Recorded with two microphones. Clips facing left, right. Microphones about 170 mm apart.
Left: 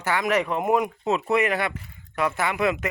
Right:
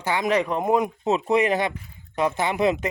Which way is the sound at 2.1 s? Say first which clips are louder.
Right 2 dB; 25° right (ahead or behind).